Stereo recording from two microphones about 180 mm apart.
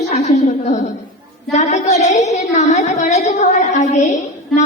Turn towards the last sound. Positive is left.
turn(degrees=40)  # may be behind; listen again after turning